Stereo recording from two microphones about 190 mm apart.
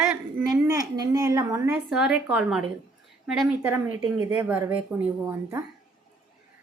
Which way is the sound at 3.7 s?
15° right (ahead or behind).